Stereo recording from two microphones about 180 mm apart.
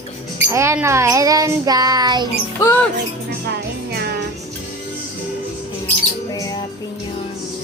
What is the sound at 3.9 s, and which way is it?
Music, 60° right (ahead or behind).